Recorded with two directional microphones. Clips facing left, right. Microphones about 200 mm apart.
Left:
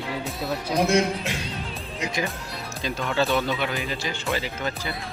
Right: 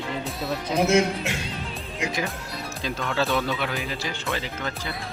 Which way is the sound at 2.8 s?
Centre (ahead or behind).